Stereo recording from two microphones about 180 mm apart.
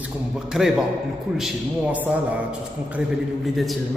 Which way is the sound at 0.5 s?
5° right (ahead or behind).